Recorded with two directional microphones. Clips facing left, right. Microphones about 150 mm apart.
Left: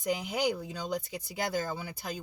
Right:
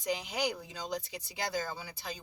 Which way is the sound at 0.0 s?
50° left (ahead or behind).